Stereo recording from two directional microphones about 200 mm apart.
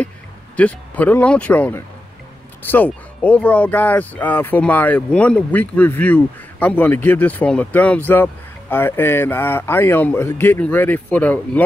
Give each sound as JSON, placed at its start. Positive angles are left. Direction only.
{"t": 0.6, "sound": "speech", "side_deg": 5}